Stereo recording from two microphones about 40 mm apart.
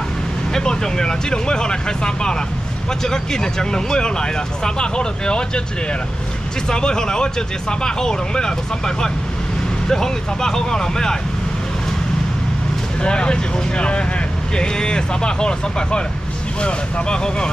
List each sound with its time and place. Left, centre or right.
0.5 s speech: centre
6.7 s speech: left
13.0 s speech: left